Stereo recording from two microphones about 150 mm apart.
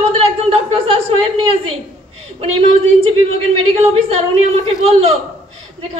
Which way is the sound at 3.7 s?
45° right (ahead or behind).